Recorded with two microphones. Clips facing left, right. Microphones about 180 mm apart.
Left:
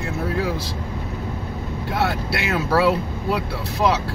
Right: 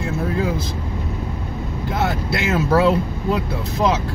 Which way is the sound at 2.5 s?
20° right (ahead or behind).